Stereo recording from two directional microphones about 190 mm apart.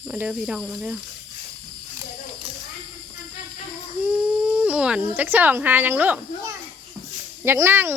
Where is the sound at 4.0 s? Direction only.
10° right (ahead or behind).